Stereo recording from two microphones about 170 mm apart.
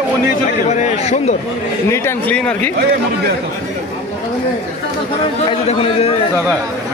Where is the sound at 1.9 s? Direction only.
10° left (ahead or behind).